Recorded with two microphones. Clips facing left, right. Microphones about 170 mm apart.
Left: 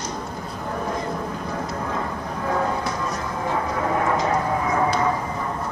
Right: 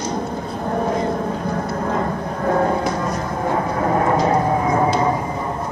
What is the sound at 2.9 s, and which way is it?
Vehicle, 35° right (ahead or behind).